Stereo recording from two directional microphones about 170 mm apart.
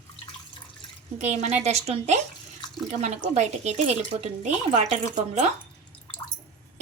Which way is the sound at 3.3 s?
40° right (ahead or behind).